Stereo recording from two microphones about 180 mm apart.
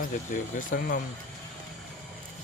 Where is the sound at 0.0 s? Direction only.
50° left (ahead or behind).